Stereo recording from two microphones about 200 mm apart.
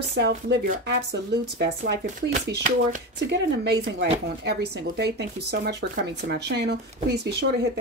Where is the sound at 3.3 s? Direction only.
55° right (ahead or behind).